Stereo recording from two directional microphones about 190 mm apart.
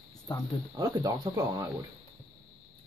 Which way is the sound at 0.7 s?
20° right (ahead or behind).